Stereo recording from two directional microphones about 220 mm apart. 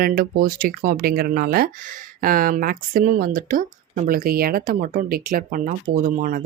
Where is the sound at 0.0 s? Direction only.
40° right (ahead or behind).